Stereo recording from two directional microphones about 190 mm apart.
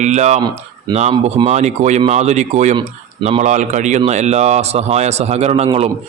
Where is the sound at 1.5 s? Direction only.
40° right (ahead or behind).